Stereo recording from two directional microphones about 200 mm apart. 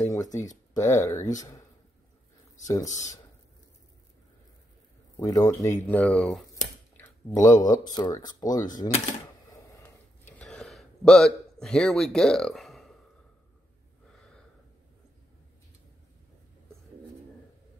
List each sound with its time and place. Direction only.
0.0 s speech: 15° left (ahead or behind)
2.6 s speech: 15° left (ahead or behind)
5.2 s speech: 15° left (ahead or behind)
6.5 s a sound: 10° left (ahead or behind)
7.9 s speech: 20° left (ahead or behind)
10.2 s a sound: 5° left (ahead or behind)